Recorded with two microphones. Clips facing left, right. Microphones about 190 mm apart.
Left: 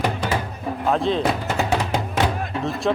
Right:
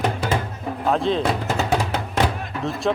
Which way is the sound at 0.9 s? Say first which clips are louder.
Even; centre (ahead or behind).